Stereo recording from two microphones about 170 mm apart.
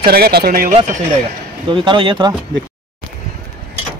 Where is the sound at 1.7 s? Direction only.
30° right (ahead or behind).